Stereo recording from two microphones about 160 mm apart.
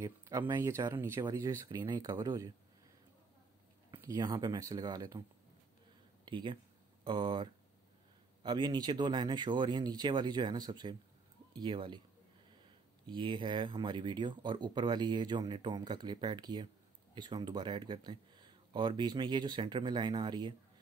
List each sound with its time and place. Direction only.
0.0 s speech: 20° right (ahead or behind)
3.9 s speech: 20° right (ahead or behind)
6.2 s speech: 30° right (ahead or behind)
13.0 s speech: 30° right (ahead or behind)